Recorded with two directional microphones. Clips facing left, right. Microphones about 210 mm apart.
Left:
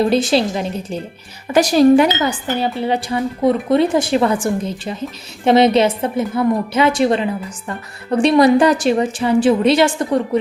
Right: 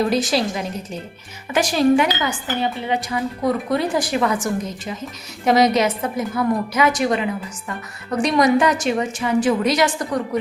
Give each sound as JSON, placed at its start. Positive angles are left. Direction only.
{"t": 0.0, "sound": "a woman's voice", "side_deg": 25}